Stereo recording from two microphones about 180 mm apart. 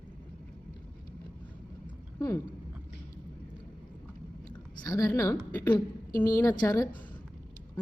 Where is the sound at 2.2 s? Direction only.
20° left (ahead or behind).